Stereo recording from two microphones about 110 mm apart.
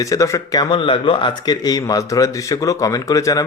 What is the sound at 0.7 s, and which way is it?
Speech, 50° left (ahead or behind).